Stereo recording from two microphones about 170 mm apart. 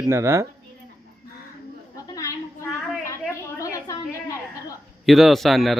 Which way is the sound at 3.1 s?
15° left (ahead or behind).